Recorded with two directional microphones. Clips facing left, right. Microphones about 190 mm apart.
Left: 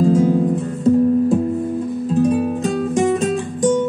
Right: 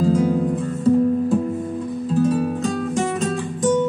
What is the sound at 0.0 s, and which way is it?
Music, 20° left (ahead or behind).